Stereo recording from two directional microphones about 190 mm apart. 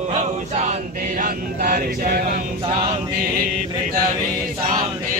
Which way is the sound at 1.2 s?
45° right (ahead or behind).